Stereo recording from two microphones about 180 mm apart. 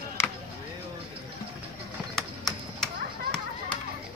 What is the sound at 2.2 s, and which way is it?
Chop, centre (ahead or behind).